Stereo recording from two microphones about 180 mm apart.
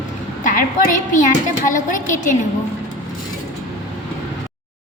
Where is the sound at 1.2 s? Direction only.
45° left (ahead or behind).